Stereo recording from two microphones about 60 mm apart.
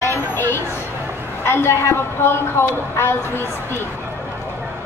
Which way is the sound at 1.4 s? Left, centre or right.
Left.